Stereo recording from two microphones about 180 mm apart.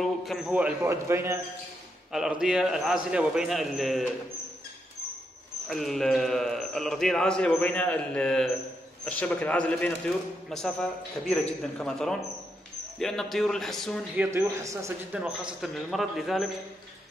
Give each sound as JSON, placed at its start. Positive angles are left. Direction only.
{"t": 0.0, "sound": "a man's voice", "side_deg": 0}
{"t": 2.1, "sound": "a man's voice", "side_deg": -5}
{"t": 5.7, "sound": "a man's voice", "side_deg": 0}
{"t": 14.1, "sound": "a man's voice", "side_deg": -15}
{"t": 15.1, "sound": "a man's voice", "side_deg": -5}